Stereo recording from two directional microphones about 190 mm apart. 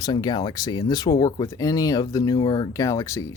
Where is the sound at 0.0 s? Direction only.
20° left (ahead or behind).